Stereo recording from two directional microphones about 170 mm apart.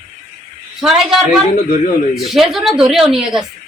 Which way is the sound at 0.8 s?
5° right (ahead or behind).